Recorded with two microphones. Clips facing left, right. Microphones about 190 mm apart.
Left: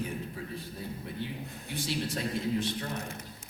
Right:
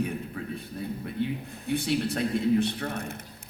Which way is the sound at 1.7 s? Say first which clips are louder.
Right 8 dB; 60° right (ahead or behind).